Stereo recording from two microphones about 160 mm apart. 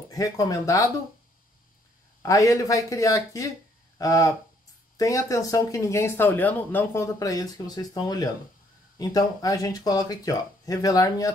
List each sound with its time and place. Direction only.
0.1 s speech: 20° left (ahead or behind)
2.2 s speech: 20° left (ahead or behind)